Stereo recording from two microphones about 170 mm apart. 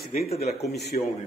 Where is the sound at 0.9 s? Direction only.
45° left (ahead or behind).